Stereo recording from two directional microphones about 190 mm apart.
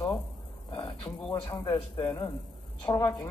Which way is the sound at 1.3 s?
25° left (ahead or behind).